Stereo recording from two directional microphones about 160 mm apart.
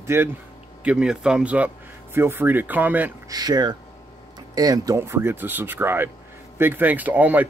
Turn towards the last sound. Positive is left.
turn(degrees=-10)  # may be behind; listen again after turning